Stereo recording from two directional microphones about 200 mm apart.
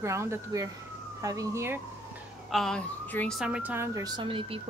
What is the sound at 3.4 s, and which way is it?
Speech, 5° right (ahead or behind).